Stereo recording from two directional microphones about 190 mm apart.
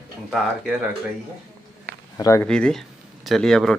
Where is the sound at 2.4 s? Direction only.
5° left (ahead or behind).